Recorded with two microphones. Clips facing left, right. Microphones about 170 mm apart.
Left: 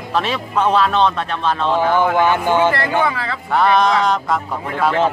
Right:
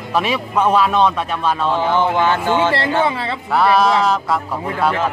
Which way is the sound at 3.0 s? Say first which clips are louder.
Right 1 dB; 25° right (ahead or behind).